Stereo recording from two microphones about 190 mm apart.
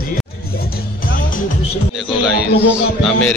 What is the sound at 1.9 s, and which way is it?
Speech, centre (ahead or behind).